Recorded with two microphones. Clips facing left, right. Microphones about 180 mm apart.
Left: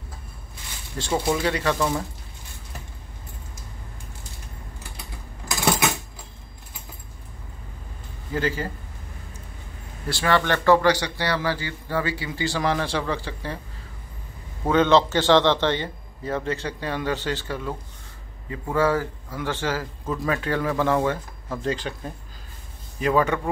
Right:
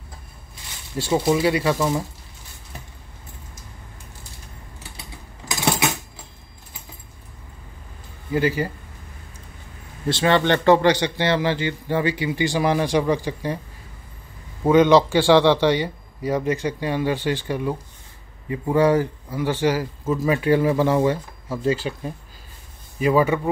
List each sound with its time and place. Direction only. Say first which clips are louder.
0.9 s a man's voice: right 4 dB; 10° right (ahead or behind)
8.3 s speech: right 5 dB; 10° right (ahead or behind)
10.0 s a man's voice: right 4 dB; 20° right (ahead or behind)
14.6 s a man's voice: right 4 dB; 10° right (ahead or behind)